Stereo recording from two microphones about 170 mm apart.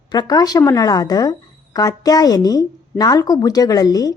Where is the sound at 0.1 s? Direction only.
25° left (ahead or behind).